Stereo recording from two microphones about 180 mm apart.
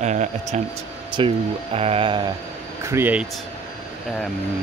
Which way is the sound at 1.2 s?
30° right (ahead or behind).